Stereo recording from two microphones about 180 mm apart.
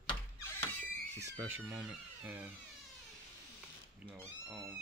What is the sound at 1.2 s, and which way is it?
A man's voice, 15° right (ahead or behind).